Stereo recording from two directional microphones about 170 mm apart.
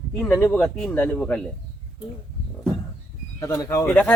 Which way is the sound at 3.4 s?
15° left (ahead or behind).